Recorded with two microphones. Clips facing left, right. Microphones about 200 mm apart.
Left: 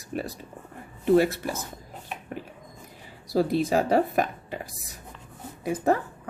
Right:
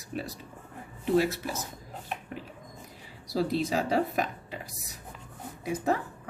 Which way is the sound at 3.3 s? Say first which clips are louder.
Left 5 dB; 50° left (ahead or behind).